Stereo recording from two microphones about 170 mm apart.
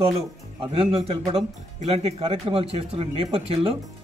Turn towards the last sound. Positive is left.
turn(degrees=-35)  # may be behind; listen again after turning